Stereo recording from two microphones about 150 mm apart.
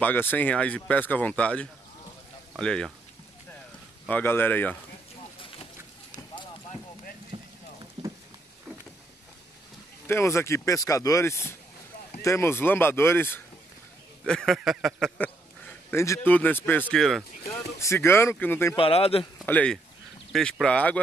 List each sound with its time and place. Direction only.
0.0 s speech: 15° left (ahead or behind)
4.1 s speech: 15° left (ahead or behind)
7.3 s rain on surface: 40° right (ahead or behind)
10.0 s speech: 15° left (ahead or behind)
14.2 s speech: 5° left (ahead or behind)
17.7 s speech: 20° left (ahead or behind)
18.8 s speech: 40° left (ahead or behind)
19.4 s speech: 10° left (ahead or behind)